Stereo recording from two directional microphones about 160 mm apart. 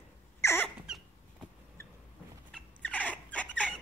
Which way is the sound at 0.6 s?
5° right (ahead or behind).